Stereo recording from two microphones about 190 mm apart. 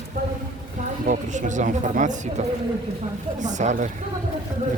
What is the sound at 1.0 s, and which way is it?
Speech, 40° right (ahead or behind).